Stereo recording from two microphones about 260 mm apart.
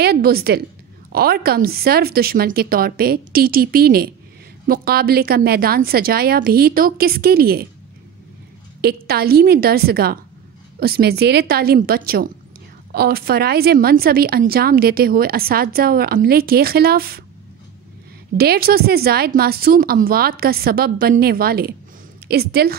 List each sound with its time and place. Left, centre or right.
0.0 s a woman's voice: right
8.8 s a woman's voice: right
18.4 s a woman's voice: right